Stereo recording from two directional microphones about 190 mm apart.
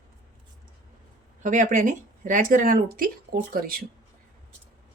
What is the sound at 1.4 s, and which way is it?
Speech, 40° right (ahead or behind).